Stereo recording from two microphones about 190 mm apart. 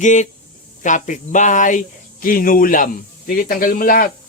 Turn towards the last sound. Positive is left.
turn(degrees=50)  # may be behind; listen again after turning